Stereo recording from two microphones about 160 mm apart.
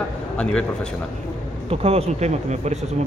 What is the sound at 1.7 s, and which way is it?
Speech, 40° right (ahead or behind).